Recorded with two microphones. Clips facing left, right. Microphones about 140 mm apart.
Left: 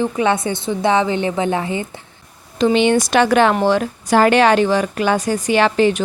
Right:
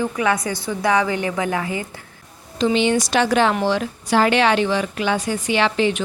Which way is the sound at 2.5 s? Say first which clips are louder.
Left 4 dB; 55° left (ahead or behind).